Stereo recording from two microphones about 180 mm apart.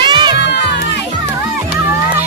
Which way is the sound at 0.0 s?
25° right (ahead or behind).